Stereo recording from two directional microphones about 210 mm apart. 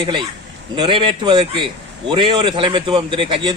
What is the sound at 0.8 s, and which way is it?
A man's voice, 20° right (ahead or behind).